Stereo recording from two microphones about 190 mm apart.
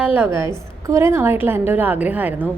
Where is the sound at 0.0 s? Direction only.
10° right (ahead or behind).